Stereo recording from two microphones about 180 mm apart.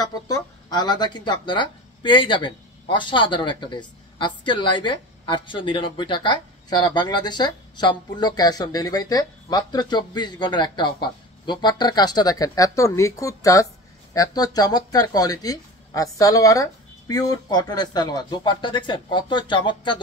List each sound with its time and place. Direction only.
0.0 s speech: 20° left (ahead or behind)